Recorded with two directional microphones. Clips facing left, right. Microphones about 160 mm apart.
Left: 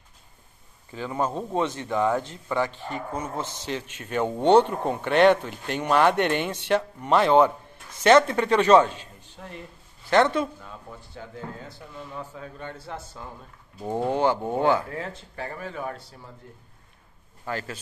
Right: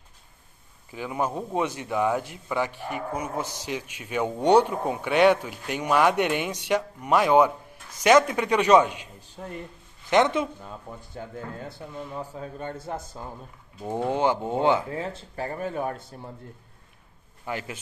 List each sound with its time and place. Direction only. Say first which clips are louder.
0.9 s a man's voice: left 1 dB; 10° right (ahead or behind)
11.0 s speech: right 2 dB; 45° right (ahead or behind)
14.0 s a man's voice: left 1 dB; 15° right (ahead or behind)
15.3 s speech: right 5 dB; 40° right (ahead or behind)
17.5 s a man's voice: left 1 dB; 15° right (ahead or behind)